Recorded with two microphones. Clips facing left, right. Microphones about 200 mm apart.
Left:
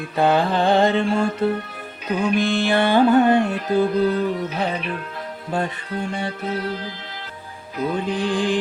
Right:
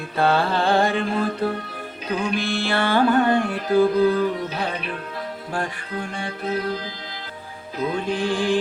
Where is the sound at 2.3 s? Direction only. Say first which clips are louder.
Left 4 dB; 20° left (ahead or behind).